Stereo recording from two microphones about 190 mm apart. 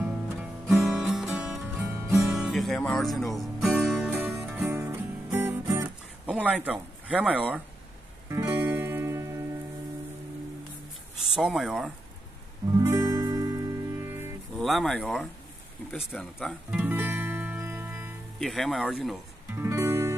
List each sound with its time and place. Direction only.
0.4 s music: 5° right (ahead or behind)
6.2 s speech: 5° right (ahead or behind)
8.3 s music: 15° right (ahead or behind)
11.3 s speech: centre (ahead or behind)
12.7 s music: 15° right (ahead or behind)
14.6 s speech: centre (ahead or behind)
16.7 s music: 10° right (ahead or behind)
18.4 s speech: centre (ahead or behind)
19.5 s music: 15° right (ahead or behind)